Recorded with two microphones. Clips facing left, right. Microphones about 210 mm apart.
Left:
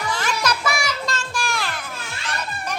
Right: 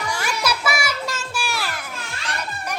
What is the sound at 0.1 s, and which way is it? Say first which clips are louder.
Music: left 1 dB; 10° right (ahead or behind).